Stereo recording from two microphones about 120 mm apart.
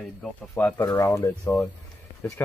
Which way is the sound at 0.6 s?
15° left (ahead or behind).